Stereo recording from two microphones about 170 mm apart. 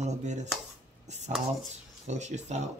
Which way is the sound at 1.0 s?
45° right (ahead or behind).